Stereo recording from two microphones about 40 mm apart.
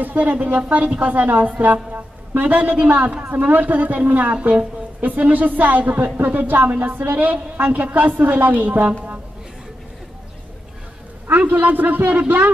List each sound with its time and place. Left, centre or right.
0.0 s a woman's voice: right
3.3 s a woman's voice: right
5.9 s a woman's voice: right
11.2 s a woman's voice: right